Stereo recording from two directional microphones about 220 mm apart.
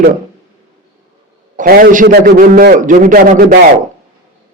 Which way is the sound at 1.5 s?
40° right (ahead or behind).